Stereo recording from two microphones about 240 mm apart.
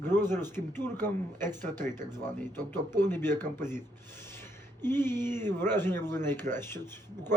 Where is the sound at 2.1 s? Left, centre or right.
Centre.